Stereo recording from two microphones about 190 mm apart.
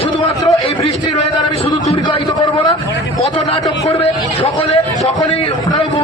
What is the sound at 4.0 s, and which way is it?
Vehicle, 30° left (ahead or behind).